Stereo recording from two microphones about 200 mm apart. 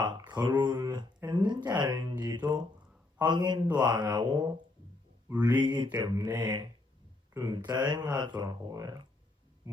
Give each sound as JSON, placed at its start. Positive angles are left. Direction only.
{"t": 0.0, "sound": "speech", "side_deg": -20}